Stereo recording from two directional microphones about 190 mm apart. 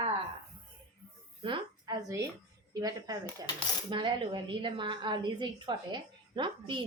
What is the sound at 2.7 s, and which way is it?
A woman's voice, 20° right (ahead or behind).